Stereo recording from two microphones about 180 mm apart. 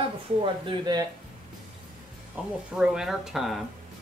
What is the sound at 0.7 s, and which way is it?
Speech, 20° right (ahead or behind).